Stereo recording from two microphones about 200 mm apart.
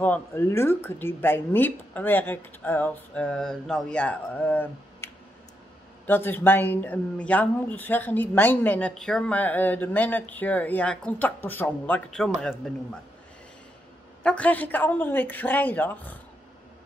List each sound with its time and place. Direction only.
0.0 s speech: 10° left (ahead or behind)
14.2 s speech: 5° left (ahead or behind)